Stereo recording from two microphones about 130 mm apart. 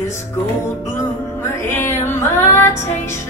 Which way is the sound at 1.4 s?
20° left (ahead or behind).